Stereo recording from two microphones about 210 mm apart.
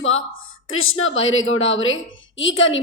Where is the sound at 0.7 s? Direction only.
75° left (ahead or behind).